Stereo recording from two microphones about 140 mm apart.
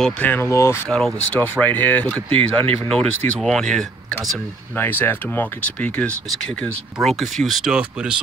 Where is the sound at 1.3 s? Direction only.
15° left (ahead or behind).